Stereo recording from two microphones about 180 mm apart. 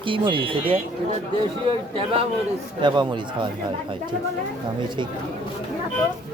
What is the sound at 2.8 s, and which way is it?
Speech, 25° right (ahead or behind).